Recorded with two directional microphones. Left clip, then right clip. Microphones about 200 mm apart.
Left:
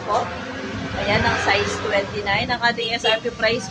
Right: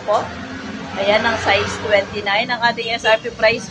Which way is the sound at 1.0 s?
20° right (ahead or behind).